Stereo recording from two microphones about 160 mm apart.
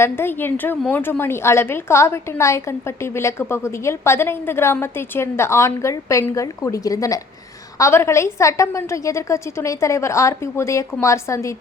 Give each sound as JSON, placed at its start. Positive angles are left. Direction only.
{"t": 0.0, "sound": "a woman's voice", "side_deg": 15}